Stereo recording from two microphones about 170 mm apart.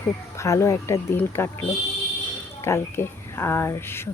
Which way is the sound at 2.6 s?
15° left (ahead or behind).